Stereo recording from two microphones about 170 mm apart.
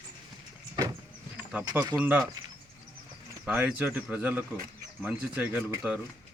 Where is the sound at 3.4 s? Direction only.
10° right (ahead or behind).